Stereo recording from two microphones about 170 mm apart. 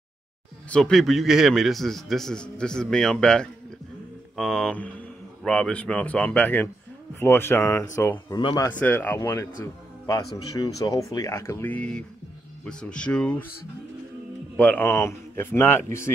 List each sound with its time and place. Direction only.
0.7 s a man's voice: 5° left (ahead or behind)
8.4 s speech: 30° left (ahead or behind)
8.6 s speech: 10° left (ahead or behind)
10.8 s a man's voice: 20° left (ahead or behind)
14.6 s speech: 10° left (ahead or behind)